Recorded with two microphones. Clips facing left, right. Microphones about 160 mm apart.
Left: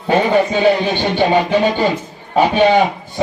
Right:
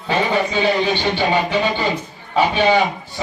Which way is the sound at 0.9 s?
50° left (ahead or behind).